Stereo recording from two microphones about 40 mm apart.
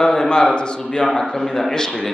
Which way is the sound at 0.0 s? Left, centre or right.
Centre.